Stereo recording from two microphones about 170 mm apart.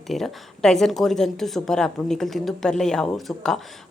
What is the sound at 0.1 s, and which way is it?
A woman's voice, centre (ahead or behind).